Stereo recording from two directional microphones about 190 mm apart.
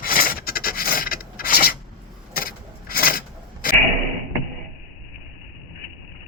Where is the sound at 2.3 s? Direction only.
50° left (ahead or behind).